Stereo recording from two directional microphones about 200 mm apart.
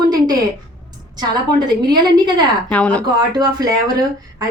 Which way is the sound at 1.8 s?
20° right (ahead or behind).